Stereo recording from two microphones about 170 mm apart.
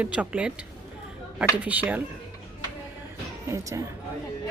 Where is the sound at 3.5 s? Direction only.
20° right (ahead or behind).